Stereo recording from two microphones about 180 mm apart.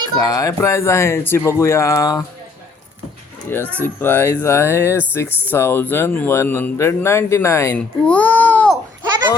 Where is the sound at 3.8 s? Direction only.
10° left (ahead or behind).